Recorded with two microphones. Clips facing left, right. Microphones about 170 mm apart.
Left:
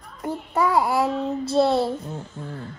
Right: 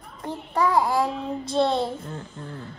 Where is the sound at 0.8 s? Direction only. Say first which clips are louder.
Left 1 dB; 5° left (ahead or behind).